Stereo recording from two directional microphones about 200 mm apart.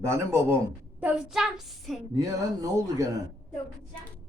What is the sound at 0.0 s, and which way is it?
Speech, 15° right (ahead or behind).